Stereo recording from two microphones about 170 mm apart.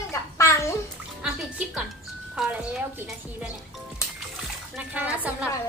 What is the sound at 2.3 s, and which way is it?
Speech, 5° right (ahead or behind).